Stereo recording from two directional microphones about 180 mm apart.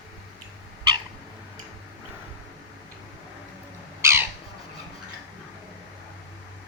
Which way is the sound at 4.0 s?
15° right (ahead or behind).